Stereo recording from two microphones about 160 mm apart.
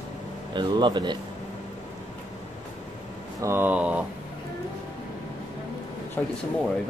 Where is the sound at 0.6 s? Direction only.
30° right (ahead or behind).